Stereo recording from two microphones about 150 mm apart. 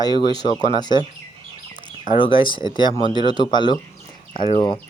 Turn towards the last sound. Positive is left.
turn(degrees=35)  # may be behind; listen again after turning